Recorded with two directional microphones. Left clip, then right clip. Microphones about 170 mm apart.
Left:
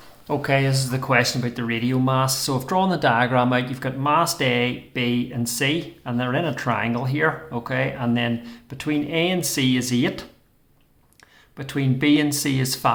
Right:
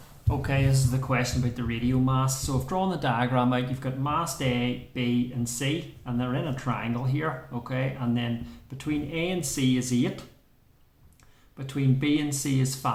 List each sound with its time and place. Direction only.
0.3 s speech: 25° left (ahead or behind)
11.5 s speech: 35° left (ahead or behind)